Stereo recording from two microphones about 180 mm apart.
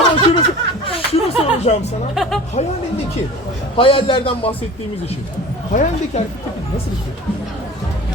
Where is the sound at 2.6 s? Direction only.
40° left (ahead or behind).